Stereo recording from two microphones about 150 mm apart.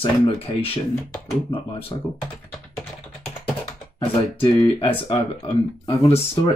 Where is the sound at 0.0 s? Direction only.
40° left (ahead or behind).